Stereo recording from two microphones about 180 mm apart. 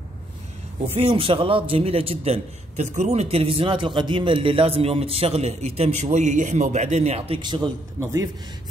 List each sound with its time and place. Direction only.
0.9 s a man's voice: 30° right (ahead or behind); by 8.3 s 15° right (ahead or behind)